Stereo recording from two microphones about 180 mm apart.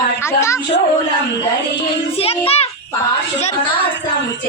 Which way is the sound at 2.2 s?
35° left (ahead or behind).